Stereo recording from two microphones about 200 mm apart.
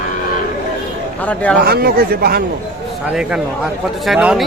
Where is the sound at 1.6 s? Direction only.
50° right (ahead or behind).